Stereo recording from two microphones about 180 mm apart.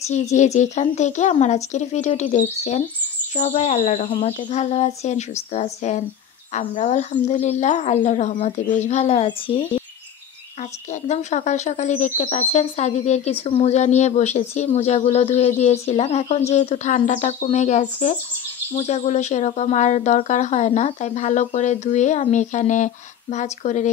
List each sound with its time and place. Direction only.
0.1 s speech: 40° left (ahead or behind)
10.9 s speech: 40° left (ahead or behind)